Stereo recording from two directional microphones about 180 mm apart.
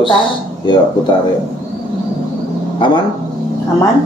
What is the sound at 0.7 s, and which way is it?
Speech, 25° left (ahead or behind).